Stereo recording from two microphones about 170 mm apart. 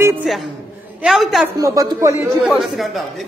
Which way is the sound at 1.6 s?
20° right (ahead or behind).